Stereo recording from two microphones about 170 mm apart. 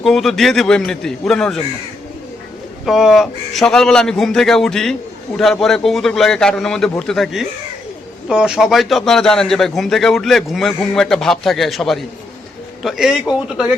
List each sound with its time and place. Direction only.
0.0 s a man's voice: centre (ahead or behind)
2.8 s a man's voice: centre (ahead or behind)